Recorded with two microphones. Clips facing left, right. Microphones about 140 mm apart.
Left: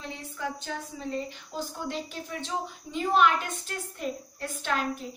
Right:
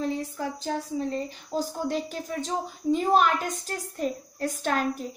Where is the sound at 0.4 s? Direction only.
40° right (ahead or behind).